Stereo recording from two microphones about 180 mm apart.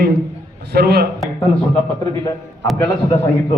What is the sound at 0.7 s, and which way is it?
Speech, 60° right (ahead or behind).